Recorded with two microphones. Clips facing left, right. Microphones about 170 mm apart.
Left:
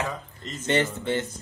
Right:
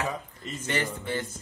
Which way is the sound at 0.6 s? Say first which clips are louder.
Left 6 dB; 25° left (ahead or behind).